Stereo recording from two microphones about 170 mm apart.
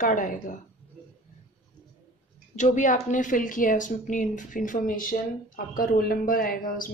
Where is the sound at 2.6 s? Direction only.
45° left (ahead or behind).